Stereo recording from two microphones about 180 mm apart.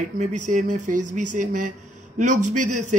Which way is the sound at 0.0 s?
45° right (ahead or behind).